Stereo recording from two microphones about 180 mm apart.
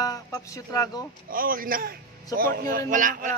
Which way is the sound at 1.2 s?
50° right (ahead or behind).